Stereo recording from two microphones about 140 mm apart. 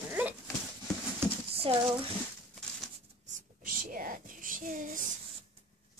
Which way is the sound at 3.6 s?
80° right.